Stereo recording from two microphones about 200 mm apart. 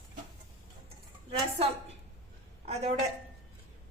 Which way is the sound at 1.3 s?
30° right (ahead or behind).